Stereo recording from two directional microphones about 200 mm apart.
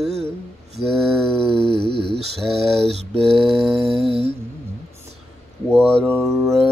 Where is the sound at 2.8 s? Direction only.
30° right (ahead or behind).